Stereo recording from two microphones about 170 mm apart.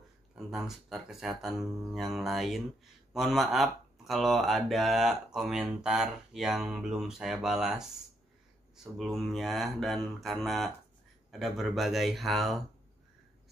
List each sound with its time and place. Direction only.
0.5 s speech: centre (ahead or behind)